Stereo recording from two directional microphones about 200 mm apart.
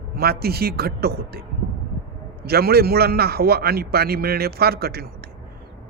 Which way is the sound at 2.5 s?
50° right (ahead or behind).